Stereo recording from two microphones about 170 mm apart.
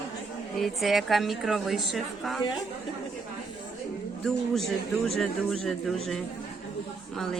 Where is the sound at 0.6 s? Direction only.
Centre (ahead or behind).